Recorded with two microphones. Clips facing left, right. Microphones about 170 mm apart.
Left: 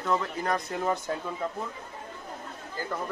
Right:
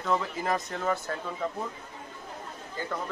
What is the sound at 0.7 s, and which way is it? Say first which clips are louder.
Speech: left 1 dB; 20° left (ahead or behind).